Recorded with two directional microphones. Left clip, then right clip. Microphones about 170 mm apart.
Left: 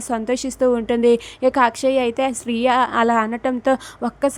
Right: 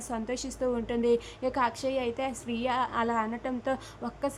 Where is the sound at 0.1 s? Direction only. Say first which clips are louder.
Left 12 dB; 40° left (ahead or behind).